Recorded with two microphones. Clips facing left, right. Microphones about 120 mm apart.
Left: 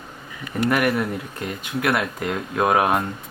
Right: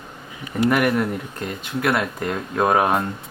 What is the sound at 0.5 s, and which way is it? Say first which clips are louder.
Speech: right 2 dB; centre (ahead or behind).